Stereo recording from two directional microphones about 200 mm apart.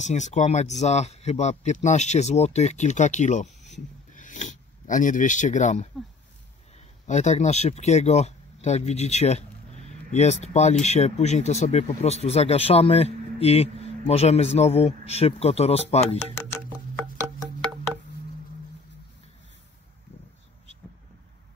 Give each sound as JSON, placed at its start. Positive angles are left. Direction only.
{"t": 0.0, "sound": "speech", "side_deg": 35}
{"t": 7.1, "sound": "speech", "side_deg": 35}